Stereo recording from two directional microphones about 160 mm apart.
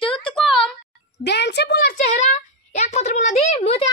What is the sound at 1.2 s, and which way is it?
Speech, 90° left.